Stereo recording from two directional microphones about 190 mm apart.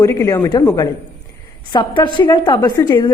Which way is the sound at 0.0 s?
15° left (ahead or behind).